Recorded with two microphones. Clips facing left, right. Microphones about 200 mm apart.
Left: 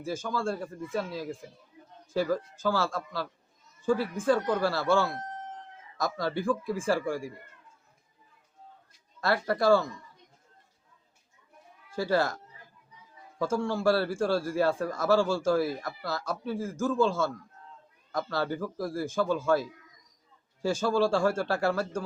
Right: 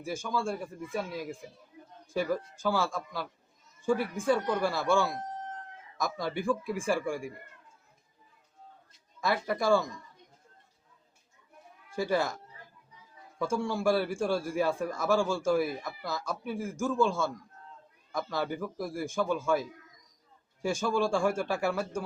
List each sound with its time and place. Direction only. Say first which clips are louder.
0.0 s a man's voice: left 1 dB; 10° right (ahead or behind)
9.2 s a man's voice: left 3 dB; 15° right (ahead or behind)
11.9 s a man's voice: left 2 dB; 15° right (ahead or behind)
13.4 s a man's voice: left 2 dB; 15° right (ahead or behind)
18.3 s a man's voice: left 2 dB; 15° right (ahead or behind)